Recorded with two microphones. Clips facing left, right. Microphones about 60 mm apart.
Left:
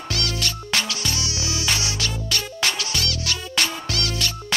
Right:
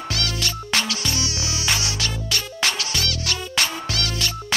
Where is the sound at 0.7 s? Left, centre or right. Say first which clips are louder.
Right 1 dB; right.